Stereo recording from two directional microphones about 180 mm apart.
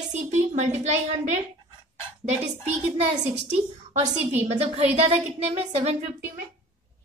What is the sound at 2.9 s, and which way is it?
A woman's voice, 40° right (ahead or behind).